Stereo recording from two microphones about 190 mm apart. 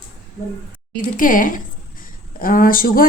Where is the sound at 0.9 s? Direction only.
45° left (ahead or behind).